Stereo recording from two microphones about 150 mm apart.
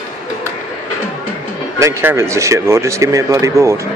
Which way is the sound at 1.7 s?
20° right (ahead or behind).